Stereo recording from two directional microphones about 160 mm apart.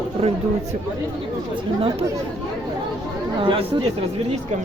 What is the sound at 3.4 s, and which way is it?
Speech, 30° right (ahead or behind).